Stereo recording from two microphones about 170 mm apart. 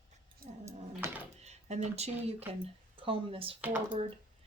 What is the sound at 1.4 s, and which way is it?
Speech, 40° right (ahead or behind).